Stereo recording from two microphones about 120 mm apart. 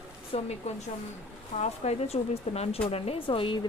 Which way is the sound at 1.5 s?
65° left (ahead or behind).